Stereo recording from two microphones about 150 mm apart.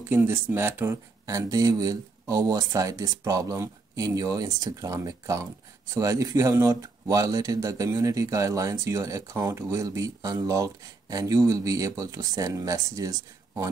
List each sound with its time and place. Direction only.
0.1 s speech: 15° right (ahead or behind)